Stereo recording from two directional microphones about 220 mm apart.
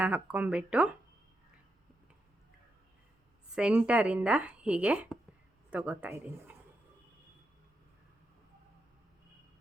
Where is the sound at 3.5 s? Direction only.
5° right (ahead or behind).